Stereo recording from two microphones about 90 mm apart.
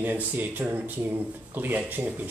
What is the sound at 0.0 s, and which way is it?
Speech, 20° right (ahead or behind).